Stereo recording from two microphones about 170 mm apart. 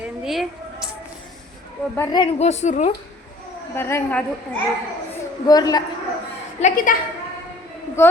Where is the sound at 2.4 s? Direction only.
40° left (ahead or behind).